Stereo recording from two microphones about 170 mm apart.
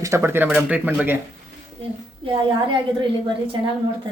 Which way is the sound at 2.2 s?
30° right (ahead or behind).